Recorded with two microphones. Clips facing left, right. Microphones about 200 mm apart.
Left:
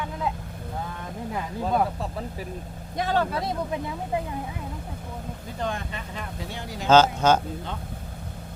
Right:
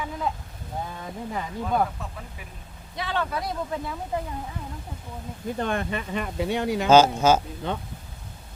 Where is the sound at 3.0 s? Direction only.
45° left (ahead or behind).